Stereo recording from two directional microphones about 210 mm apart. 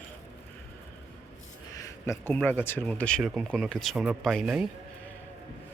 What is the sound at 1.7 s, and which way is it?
Speech, 15° left (ahead or behind).